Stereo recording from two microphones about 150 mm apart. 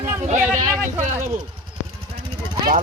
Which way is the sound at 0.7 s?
15° right (ahead or behind).